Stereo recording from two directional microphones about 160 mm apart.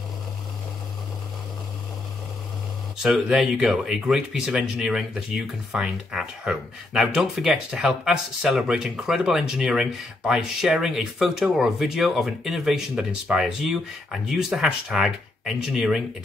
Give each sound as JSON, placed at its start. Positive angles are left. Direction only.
{"t": 3.0, "sound": "speech", "side_deg": -5}